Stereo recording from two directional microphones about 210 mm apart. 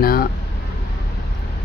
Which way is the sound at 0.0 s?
45° left (ahead or behind).